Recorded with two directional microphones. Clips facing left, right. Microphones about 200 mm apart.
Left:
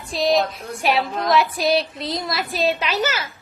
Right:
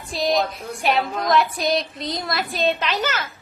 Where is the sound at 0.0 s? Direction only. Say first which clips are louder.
Left 2 dB; centre (ahead or behind).